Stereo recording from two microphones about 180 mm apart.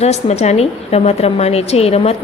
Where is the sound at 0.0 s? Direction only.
35° left (ahead or behind).